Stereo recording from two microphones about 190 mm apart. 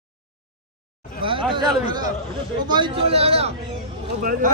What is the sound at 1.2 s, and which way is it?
A man's voice, 25° right (ahead or behind).